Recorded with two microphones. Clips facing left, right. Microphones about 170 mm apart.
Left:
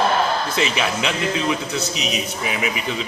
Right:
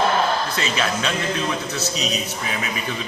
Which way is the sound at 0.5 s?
15° left (ahead or behind).